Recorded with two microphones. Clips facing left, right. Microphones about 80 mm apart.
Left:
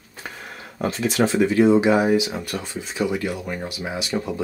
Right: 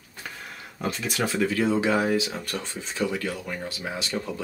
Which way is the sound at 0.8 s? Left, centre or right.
Left.